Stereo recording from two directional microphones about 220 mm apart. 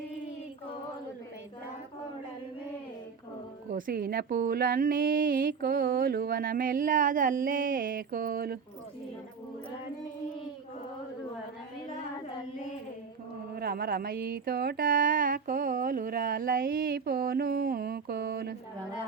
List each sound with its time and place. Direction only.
3.7 s speech: 40° right (ahead or behind)
13.6 s speech: 45° right (ahead or behind)